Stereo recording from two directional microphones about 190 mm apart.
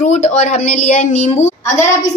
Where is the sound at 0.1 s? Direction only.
35° left (ahead or behind).